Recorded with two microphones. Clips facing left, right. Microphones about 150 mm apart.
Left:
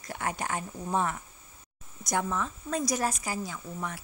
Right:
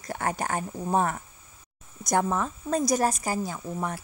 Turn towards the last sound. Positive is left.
turn(degrees=-40)  # may be behind; listen again after turning